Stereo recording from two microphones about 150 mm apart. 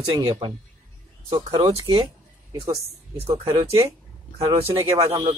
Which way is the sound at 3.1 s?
40° right (ahead or behind).